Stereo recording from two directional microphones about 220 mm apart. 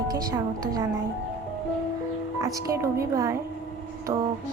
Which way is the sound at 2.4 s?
15° right (ahead or behind).